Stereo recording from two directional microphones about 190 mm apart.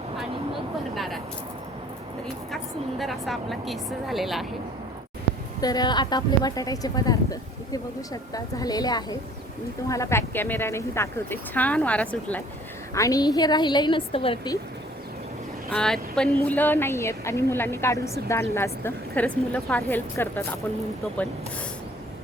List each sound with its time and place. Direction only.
0.9 s a sound: centre (ahead or behind)
3.0 s a woman's voice: centre (ahead or behind)
5.5 s a woman's voice: 20° left (ahead or behind)
15.7 s a woman's voice: 5° left (ahead or behind)